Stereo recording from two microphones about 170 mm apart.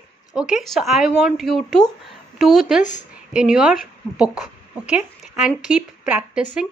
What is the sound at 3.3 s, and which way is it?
Speech, 5° right (ahead or behind).